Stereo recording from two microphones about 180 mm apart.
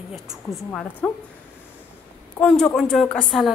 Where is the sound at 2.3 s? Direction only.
5° left (ahead or behind).